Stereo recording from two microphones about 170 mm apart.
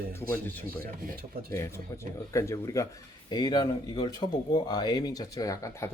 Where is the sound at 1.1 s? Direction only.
60° right (ahead or behind).